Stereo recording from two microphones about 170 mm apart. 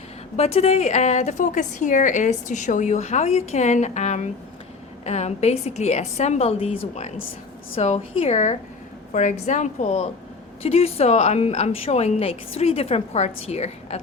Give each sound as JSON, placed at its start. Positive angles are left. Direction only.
{"t": 0.3, "sound": "a woman's voice", "side_deg": 35}